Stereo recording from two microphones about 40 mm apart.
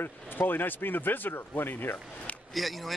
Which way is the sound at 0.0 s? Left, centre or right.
Left.